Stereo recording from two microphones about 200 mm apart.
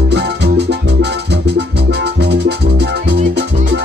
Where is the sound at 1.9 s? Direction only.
55° right (ahead or behind).